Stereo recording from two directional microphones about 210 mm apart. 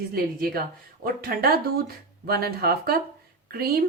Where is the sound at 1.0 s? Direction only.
45° right (ahead or behind).